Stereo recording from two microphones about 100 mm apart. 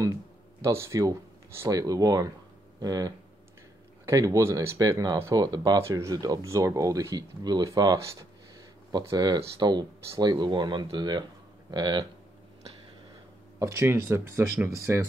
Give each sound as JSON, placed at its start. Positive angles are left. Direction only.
{"t": 0.7, "sound": "speech", "side_deg": -30}
{"t": 5.8, "sound": "speech", "side_deg": -30}
{"t": 13.6, "sound": "speech", "side_deg": -30}